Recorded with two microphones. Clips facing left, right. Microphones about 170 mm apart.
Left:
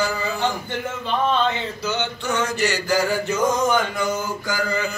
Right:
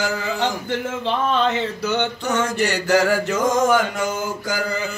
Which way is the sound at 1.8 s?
55° right (ahead or behind).